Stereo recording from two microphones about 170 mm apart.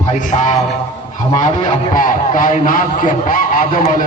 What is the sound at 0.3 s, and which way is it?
A man's voice, 45° left (ahead or behind).